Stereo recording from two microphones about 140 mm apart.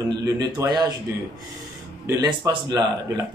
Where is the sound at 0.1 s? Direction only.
30° right (ahead or behind).